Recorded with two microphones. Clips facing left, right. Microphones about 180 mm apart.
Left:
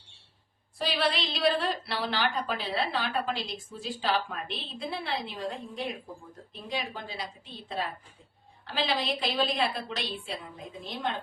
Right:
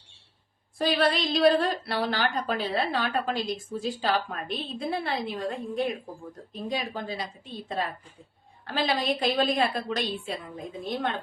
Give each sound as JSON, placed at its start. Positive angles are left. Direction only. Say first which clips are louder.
{"t": 0.8, "sound": "a woman's voice", "louder": "right 5 dB", "side_deg": -50}